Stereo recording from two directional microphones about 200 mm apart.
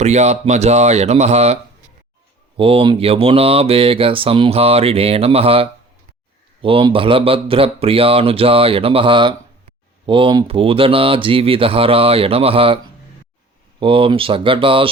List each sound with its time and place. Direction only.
0.0 s speech: 35° right (ahead or behind)
2.6 s speech: 25° right (ahead or behind)